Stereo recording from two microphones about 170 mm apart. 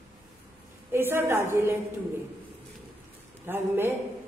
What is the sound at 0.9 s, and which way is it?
Speech, 15° right (ahead or behind).